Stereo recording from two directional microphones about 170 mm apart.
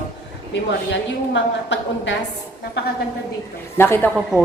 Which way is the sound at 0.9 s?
90° left.